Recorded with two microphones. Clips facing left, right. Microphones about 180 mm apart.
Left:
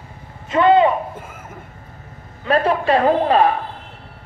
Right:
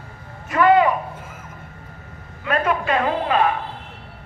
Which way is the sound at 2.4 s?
30° left (ahead or behind).